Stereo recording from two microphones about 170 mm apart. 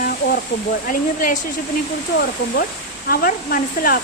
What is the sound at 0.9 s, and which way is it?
Speech, 50° left (ahead or behind).